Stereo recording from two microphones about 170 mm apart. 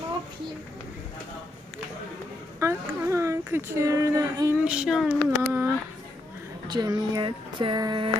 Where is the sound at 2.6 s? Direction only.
15° right (ahead or behind).